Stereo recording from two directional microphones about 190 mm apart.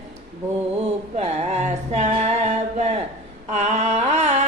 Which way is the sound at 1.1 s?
35° right (ahead or behind).